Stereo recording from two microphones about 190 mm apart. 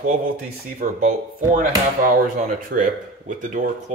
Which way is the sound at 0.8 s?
45° right (ahead or behind).